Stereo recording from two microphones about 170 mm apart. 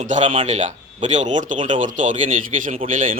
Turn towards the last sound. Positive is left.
turn(degrees=-50)  # may be behind; listen again after turning